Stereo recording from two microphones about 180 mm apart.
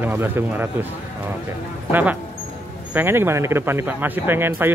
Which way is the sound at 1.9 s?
10° right (ahead or behind).